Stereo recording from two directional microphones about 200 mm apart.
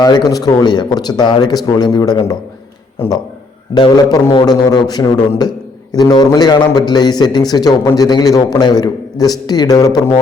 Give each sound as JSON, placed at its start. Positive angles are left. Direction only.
{"t": 0.0, "sound": "a man's voice", "side_deg": 20}
{"t": 3.8, "sound": "a man's voice", "side_deg": 20}